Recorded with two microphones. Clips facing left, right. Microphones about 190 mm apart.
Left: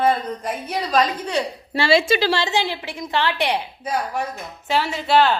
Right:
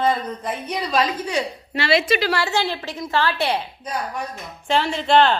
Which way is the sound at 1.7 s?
30° left (ahead or behind).